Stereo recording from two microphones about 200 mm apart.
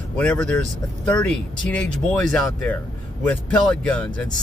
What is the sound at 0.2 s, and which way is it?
Speech, 5° left (ahead or behind).